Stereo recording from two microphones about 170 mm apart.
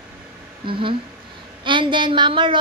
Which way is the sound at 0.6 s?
30° right (ahead or behind).